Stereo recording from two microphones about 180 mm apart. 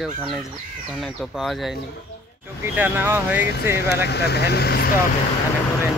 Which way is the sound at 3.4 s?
60° left (ahead or behind).